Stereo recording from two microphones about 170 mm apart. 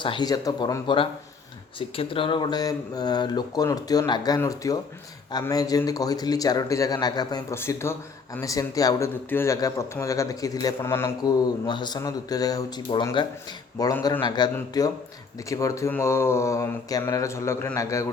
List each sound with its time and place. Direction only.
0.0 s speech: 25° left (ahead or behind)